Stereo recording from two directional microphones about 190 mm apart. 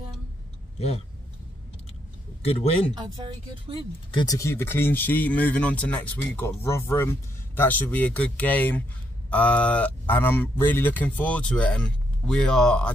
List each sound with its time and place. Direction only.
0.7 s speech: 35° left (ahead or behind)
3.3 s speech: 30° right (ahead or behind)
4.2 s speech: 15° left (ahead or behind)